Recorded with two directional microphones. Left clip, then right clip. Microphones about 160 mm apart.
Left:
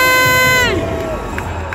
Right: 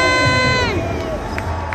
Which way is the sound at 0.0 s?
15° left (ahead or behind).